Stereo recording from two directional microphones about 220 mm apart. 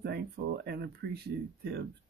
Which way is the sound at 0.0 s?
45° right (ahead or behind).